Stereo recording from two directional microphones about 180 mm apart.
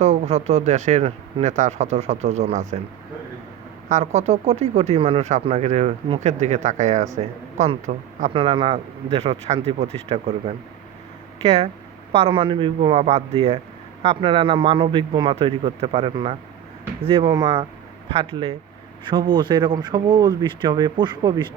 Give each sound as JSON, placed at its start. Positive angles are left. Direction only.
{"t": 0.0, "sound": "speech", "side_deg": -40}
{"t": 3.8, "sound": "speech", "side_deg": -40}
{"t": 8.3, "sound": "speech", "side_deg": -30}